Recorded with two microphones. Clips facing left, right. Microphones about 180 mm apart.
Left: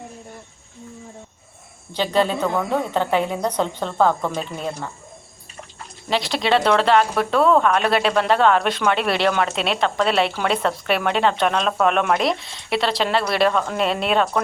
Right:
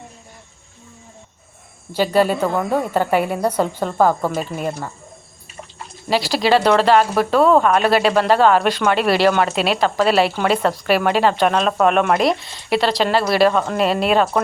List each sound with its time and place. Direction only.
1.9 s a woman's voice: 10° right (ahead or behind)
6.1 s speech: 5° right (ahead or behind)